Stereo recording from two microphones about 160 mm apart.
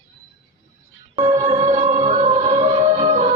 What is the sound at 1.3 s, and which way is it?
Music, 45° right (ahead or behind).